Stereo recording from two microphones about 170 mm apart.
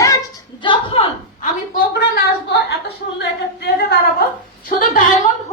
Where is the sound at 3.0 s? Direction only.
60° left (ahead or behind).